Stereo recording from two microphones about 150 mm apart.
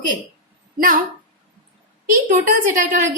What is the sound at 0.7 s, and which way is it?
Speech, 70° right (ahead or behind).